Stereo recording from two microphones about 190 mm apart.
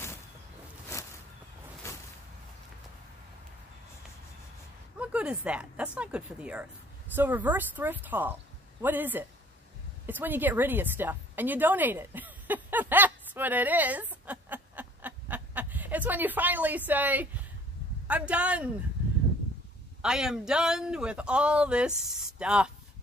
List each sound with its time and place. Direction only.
0.9 s a sound: 15° left (ahead or behind)
4.9 s a woman's voice: 5° right (ahead or behind)
20.0 s speech: 5° right (ahead or behind)